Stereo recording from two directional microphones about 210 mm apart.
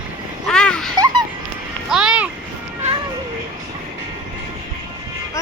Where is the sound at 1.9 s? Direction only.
5° right (ahead or behind).